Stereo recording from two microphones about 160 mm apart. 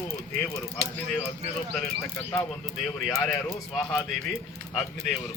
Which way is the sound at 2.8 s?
5° left (ahead or behind).